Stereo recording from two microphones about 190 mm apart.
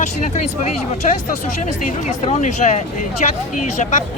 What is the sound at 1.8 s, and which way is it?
Speech, 40° left (ahead or behind).